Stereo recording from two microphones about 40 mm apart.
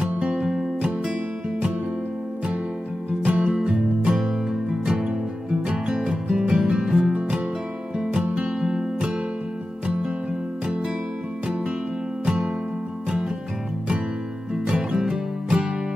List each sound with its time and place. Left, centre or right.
0.2 s music: right
3.3 s music: right
3.6 s music: centre
4.9 s music: right
14.5 s music: right